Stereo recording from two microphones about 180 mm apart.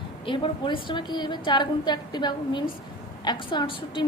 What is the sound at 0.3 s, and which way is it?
A woman's voice, 30° left (ahead or behind).